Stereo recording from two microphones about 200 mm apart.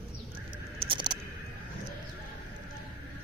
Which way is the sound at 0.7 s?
25° right (ahead or behind).